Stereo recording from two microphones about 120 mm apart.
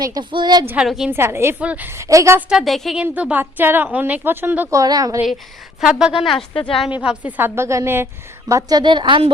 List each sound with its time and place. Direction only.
0.0 s a woman's voice: 35° right (ahead or behind)
0.9 s a woman's voice: 5° right (ahead or behind)
1.1 s a woman's voice: 20° right (ahead or behind)
2.5 s a woman's voice: centre (ahead or behind)
3.0 s a woman's voice: 10° right (ahead or behind)
4.8 s a woman's voice: 30° right (ahead or behind)
5.8 s a woman's voice: 5° right (ahead or behind)
6.5 s speech: 45° left (ahead or behind)
7.0 s a woman's voice: 10° right (ahead or behind); by 8.8 s 25° right (ahead or behind)
8.8 s a woman's voice: 40° right (ahead or behind)